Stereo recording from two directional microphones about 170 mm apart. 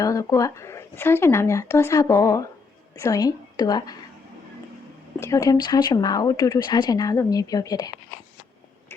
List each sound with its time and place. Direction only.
0.0 s a woman's voice: 20° left (ahead or behind)
5.2 s speech: 20° left (ahead or behind)